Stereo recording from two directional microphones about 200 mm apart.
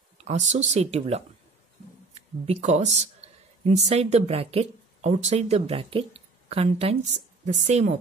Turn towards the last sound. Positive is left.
turn(degrees=-35)  # may be behind; listen again after turning